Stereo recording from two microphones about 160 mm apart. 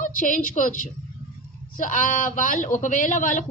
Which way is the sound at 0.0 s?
55° left (ahead or behind).